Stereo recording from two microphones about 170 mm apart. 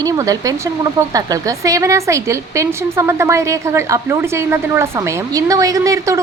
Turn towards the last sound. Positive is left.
turn(degrees=-20)  # may be behind; listen again after turning